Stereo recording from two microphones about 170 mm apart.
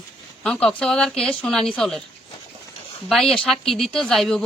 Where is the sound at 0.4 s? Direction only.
5° left (ahead or behind).